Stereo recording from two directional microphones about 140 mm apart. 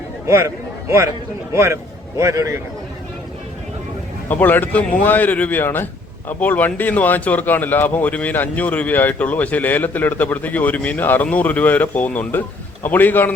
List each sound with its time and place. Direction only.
0.3 s a man's voice: 20° right (ahead or behind)
4.3 s speech: 10° left (ahead or behind)